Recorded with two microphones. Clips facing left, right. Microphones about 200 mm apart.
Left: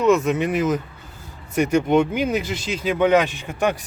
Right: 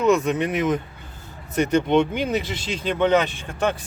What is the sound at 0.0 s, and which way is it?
Speech, centre (ahead or behind).